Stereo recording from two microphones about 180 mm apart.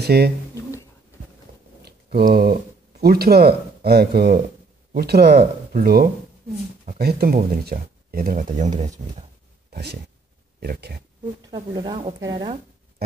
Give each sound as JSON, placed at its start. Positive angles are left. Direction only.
{"t": 0.0, "sound": "speech", "side_deg": -65}
{"t": 1.8, "sound": "a sound", "side_deg": -60}
{"t": 3.0, "sound": "speech", "side_deg": -60}
{"t": 9.7, "sound": "a sound", "side_deg": -65}
{"t": 10.6, "sound": "speech", "side_deg": -60}
{"t": 11.5, "sound": "speech", "side_deg": -25}